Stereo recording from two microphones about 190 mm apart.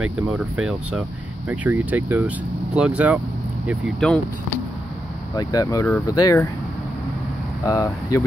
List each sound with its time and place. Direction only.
0.6 s speech: 5° right (ahead or behind)
4.0 s speech: 5° left (ahead or behind)
5.3 s speech: 20° left (ahead or behind)
7.6 s speech: 20° left (ahead or behind)